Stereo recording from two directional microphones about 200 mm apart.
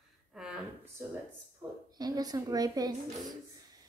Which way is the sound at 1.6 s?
10° right (ahead or behind).